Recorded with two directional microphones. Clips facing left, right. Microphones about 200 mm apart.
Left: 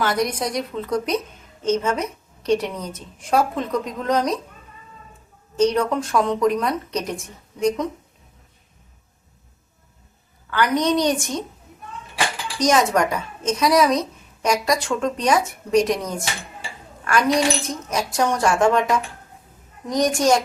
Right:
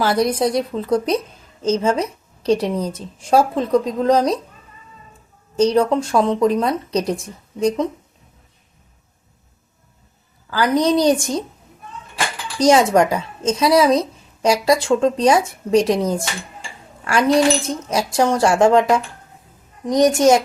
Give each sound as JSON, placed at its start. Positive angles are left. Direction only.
{"t": 0.0, "sound": "a woman's voice", "side_deg": -30}
{"t": 5.5, "sound": "a woman's voice", "side_deg": -30}
{"t": 10.5, "sound": "a woman's voice", "side_deg": -30}
{"t": 12.5, "sound": "speech", "side_deg": -30}